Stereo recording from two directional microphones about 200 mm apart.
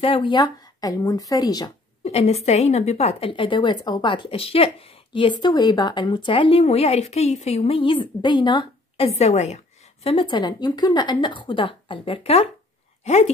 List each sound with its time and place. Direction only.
0.0 s a woman's voice: 25° left (ahead or behind)
2.0 s a woman's voice: 30° left (ahead or behind)